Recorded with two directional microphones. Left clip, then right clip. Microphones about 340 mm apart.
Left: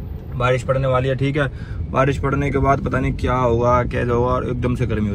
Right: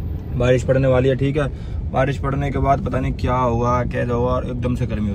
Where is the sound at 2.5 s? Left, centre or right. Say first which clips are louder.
Even; left.